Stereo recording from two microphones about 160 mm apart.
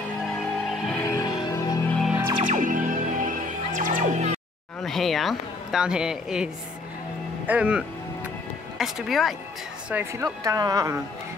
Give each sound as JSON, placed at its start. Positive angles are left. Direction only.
{"t": 0.7, "sound": "music", "side_deg": 0}
{"t": 1.0, "sound": "music", "side_deg": 25}
{"t": 1.9, "sound": "music", "side_deg": 0}
{"t": 2.4, "sound": "music", "side_deg": -55}
{"t": 4.8, "sound": "a woman's voice", "side_deg": 0}
{"t": 10.1, "sound": "speech", "side_deg": -20}